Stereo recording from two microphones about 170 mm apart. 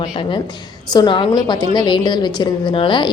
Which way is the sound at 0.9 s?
25° left (ahead or behind).